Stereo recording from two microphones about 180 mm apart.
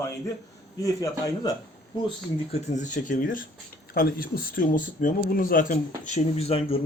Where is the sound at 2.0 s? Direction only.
35° left (ahead or behind).